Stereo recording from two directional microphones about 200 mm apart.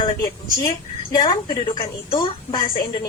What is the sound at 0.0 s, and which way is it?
A woman's voice, 20° left (ahead or behind).